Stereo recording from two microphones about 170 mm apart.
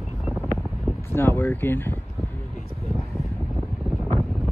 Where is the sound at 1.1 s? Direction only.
15° left (ahead or behind).